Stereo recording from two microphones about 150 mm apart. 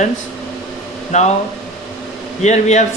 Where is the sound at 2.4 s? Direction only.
50° left (ahead or behind).